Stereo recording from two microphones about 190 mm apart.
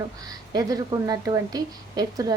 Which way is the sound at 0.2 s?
20° right (ahead or behind).